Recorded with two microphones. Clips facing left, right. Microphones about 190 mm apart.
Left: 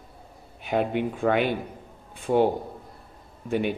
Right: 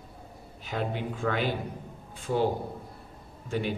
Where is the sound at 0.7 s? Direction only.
60° left (ahead or behind).